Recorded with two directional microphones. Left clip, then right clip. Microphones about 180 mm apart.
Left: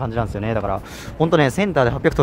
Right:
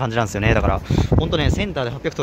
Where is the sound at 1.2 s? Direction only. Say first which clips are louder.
Left 5 dB; 25° left (ahead or behind).